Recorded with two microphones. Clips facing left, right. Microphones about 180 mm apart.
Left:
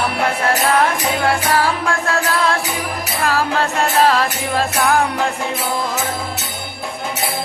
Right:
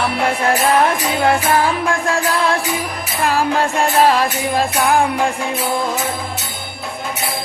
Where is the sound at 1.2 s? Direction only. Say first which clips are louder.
Right 3 dB; 20° right (ahead or behind).